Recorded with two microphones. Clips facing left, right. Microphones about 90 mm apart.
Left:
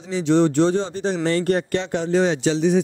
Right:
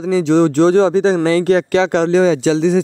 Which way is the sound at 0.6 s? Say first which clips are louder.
Right 8 dB; 90° right.